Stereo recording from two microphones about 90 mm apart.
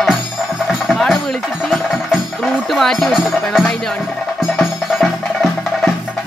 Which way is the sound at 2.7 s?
5° left (ahead or behind).